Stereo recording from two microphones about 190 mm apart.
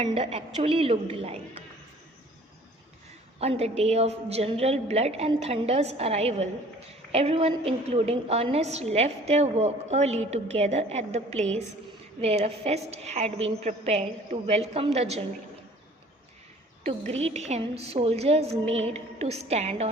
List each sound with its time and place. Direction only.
0.0 s a woman's voice: 30° right (ahead or behind)
3.4 s a woman's voice: 35° right (ahead or behind)
16.8 s a woman's voice: 35° right (ahead or behind)